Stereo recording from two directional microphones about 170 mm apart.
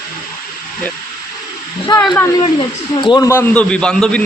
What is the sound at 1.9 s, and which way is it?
A man's voice, 25° left (ahead or behind).